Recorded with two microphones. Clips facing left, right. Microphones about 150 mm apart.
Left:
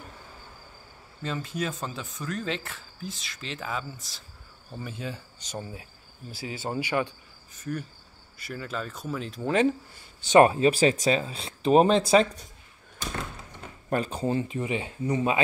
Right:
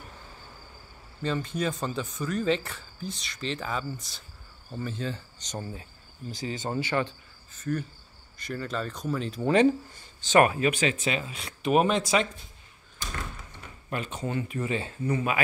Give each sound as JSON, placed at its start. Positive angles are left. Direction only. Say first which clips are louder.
{"t": 1.2, "sound": "speech", "louder": "right 2 dB", "side_deg": 0}
{"t": 10.4, "sound": "speech", "louder": "left 4 dB", "side_deg": 30}
{"t": 13.8, "sound": "speech", "louder": "left 5 dB", "side_deg": 35}
{"t": 14.6, "sound": "speech", "louder": "even", "side_deg": 15}